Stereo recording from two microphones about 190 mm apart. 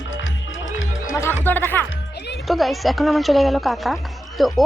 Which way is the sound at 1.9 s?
65° left (ahead or behind).